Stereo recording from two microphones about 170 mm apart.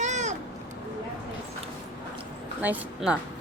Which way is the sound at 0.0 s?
45° right (ahead or behind).